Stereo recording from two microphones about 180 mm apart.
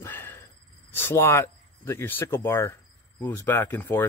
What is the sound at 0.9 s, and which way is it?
Speech, 10° left (ahead or behind).